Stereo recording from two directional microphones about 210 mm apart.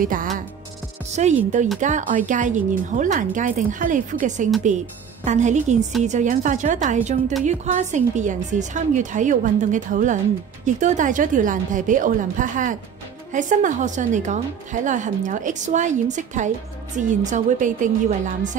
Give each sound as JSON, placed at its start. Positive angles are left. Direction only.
{"t": 0.0, "sound": "a woman's voice", "side_deg": -40}